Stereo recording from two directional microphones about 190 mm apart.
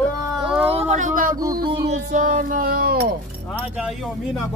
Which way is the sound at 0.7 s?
40° right (ahead or behind).